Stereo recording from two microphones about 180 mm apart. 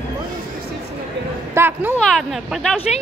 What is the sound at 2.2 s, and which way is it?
Speech, centre (ahead or behind).